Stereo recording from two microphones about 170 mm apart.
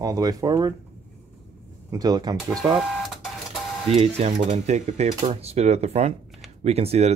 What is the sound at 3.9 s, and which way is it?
Speech, 35° right (ahead or behind).